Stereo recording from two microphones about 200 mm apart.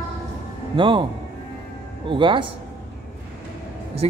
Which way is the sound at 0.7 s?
25° right (ahead or behind).